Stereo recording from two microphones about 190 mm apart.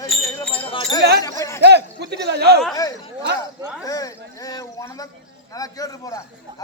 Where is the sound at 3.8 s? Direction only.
20° left (ahead or behind).